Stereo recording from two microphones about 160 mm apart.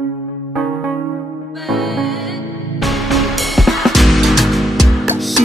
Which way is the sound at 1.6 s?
Centre (ahead or behind).